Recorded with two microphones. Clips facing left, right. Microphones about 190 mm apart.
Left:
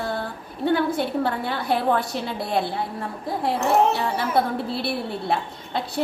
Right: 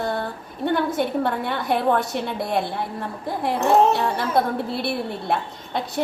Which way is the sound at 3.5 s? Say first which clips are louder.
Right 2 dB; 55° right (ahead or behind).